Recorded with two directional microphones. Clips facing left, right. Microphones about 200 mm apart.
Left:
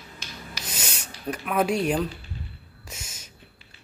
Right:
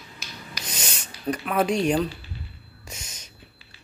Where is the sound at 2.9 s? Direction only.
5° left (ahead or behind).